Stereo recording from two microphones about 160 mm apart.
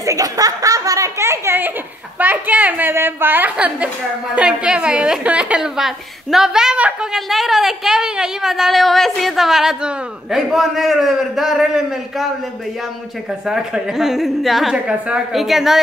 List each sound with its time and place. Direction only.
0.0 s a woman's voice: 20° right (ahead or behind); by 12.3 s centre (ahead or behind)
13.5 s a woman's voice: 5° right (ahead or behind)